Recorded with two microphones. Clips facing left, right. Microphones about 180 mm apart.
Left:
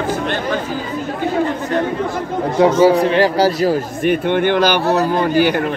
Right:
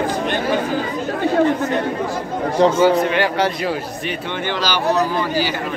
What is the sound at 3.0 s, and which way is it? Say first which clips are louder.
A man's voice: left 5 dB; 35° left (ahead or behind).